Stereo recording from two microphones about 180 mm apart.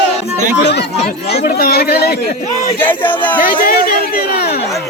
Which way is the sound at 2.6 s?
10° left (ahead or behind).